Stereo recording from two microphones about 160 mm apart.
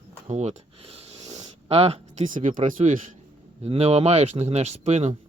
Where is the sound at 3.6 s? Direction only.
40° right (ahead or behind).